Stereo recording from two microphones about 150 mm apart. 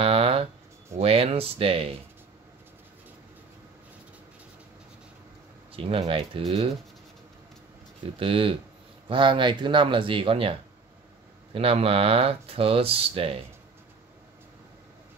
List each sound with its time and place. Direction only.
0.0 s a sound: 40° right (ahead or behind)
0.9 s speech: 40° right (ahead or behind)
5.7 s speech: 40° right (ahead or behind)
8.2 s speech: 35° right (ahead or behind)